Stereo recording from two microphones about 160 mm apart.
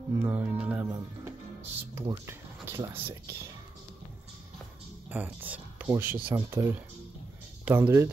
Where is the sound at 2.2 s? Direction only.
20° right (ahead or behind).